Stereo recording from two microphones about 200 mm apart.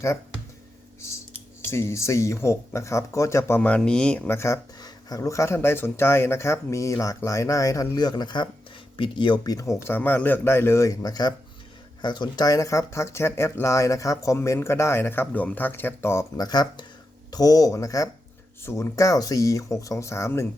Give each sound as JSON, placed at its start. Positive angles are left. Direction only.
{"t": 1.6, "sound": "speech", "side_deg": 15}